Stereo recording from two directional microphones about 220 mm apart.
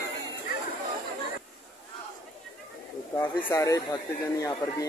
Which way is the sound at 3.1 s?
15° left (ahead or behind).